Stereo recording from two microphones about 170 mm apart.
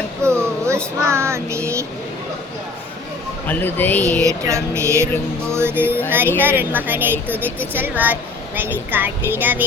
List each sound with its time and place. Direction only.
0.2 s a sound: 15° right (ahead or behind)
1.0 s speech: 15° right (ahead or behind)
3.4 s speech: 10° left (ahead or behind)
4.4 s speech: 15° right (ahead or behind)